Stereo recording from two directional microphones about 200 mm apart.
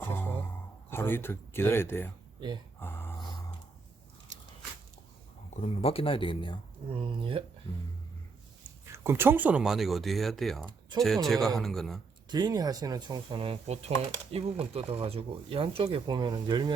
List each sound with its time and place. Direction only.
0.0 s a sound: 10° left (ahead or behind)
0.9 s speech: 10° left (ahead or behind)
2.8 s a sound: 10° left (ahead or behind)
4.3 s biting: 35° right (ahead or behind)
5.5 s speech: 30° left (ahead or behind)
6.9 s speech: 25° right (ahead or behind)
7.7 s speech: 15° left (ahead or behind)
8.9 s speech: 10° right (ahead or behind)
10.7 s speech: 20° right (ahead or behind)
11.0 s speech: centre (ahead or behind)
12.3 s speech: 20° right (ahead or behind)